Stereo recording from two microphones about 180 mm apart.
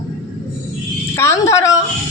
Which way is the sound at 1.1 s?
15° left (ahead or behind).